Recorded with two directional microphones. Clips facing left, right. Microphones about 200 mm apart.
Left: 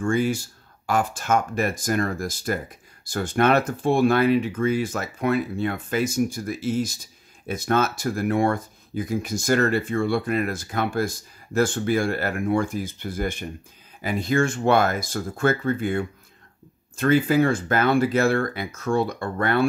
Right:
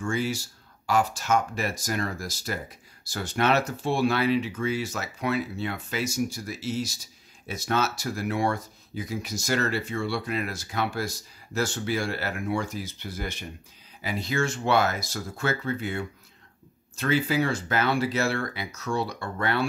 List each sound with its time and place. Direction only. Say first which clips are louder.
0.0 s speech: left 6 dB; 50° left (ahead or behind)